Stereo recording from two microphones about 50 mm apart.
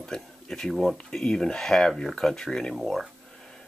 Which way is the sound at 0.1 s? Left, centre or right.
Centre.